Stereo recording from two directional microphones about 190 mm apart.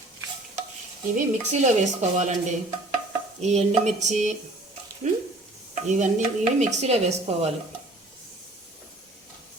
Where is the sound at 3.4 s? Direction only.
35° right (ahead or behind).